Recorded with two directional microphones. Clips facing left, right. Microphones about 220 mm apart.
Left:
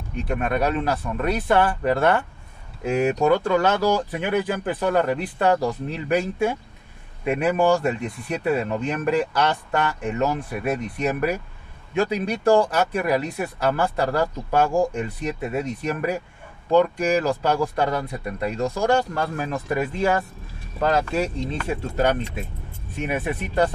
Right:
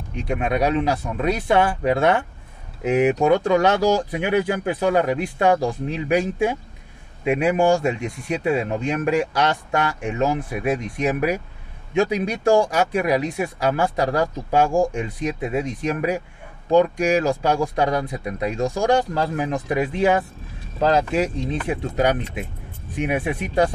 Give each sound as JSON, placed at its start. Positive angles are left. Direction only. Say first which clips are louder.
{"t": 0.3, "sound": "speech", "louder": "right 2 dB", "side_deg": -15}